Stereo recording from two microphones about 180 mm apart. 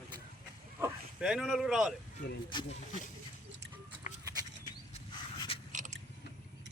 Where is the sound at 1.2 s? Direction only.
Centre (ahead or behind).